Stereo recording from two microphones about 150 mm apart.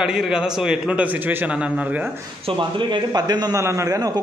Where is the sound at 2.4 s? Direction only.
35° right (ahead or behind).